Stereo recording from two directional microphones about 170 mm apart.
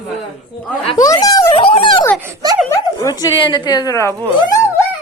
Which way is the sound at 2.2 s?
20° right (ahead or behind).